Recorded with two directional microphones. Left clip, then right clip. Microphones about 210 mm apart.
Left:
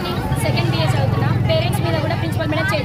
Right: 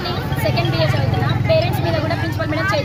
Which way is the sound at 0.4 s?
5° left (ahead or behind).